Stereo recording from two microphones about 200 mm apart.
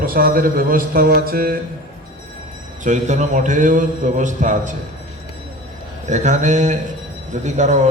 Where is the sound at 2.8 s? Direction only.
35° right (ahead or behind).